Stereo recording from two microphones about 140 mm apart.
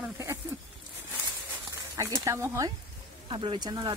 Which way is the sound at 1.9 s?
25° right (ahead or behind).